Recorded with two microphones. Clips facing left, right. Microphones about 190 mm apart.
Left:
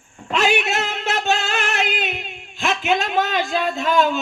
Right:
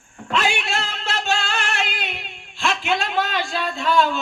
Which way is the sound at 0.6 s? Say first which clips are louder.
Left 4 dB; 20° left (ahead or behind).